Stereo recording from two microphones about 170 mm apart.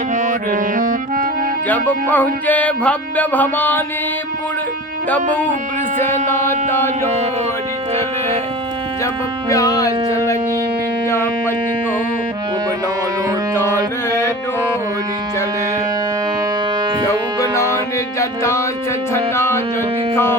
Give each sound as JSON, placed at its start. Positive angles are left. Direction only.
{"t": 0.1, "sound": "music", "side_deg": -50}
{"t": 1.6, "sound": "music", "side_deg": 10}
{"t": 6.5, "sound": "music", "side_deg": 15}
{"t": 9.5, "sound": "speech", "side_deg": 20}
{"t": 11.1, "sound": "music", "side_deg": 15}
{"t": 14.1, "sound": "music", "side_deg": 15}
{"t": 17.1, "sound": "music", "side_deg": 15}